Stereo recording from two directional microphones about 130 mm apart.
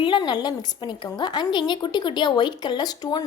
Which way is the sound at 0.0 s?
35° left (ahead or behind).